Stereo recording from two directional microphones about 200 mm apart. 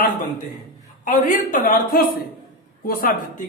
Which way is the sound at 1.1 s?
40° left (ahead or behind).